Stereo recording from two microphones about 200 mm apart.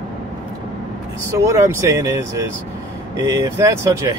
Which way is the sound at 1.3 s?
15° right (ahead or behind).